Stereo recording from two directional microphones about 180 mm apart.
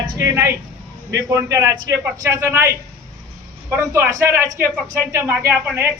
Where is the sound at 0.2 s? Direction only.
15° right (ahead or behind).